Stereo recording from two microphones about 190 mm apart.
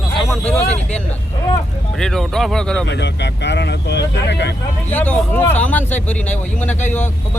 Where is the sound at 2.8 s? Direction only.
65° left (ahead or behind).